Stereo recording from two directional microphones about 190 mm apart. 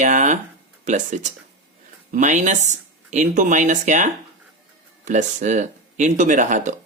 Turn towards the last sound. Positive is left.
turn(degrees=-40)  # may be behind; listen again after turning